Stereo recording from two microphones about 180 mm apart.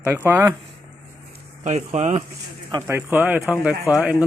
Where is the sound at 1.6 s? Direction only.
40° right (ahead or behind).